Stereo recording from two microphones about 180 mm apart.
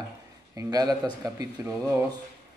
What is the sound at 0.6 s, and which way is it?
Speech, 20° right (ahead or behind).